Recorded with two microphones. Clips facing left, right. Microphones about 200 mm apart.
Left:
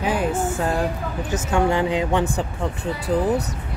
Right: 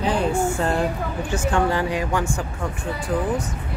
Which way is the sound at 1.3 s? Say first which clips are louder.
Left 1 dB; 10° left (ahead or behind).